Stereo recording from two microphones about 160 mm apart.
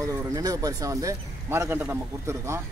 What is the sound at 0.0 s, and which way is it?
Speech, 20° right (ahead or behind).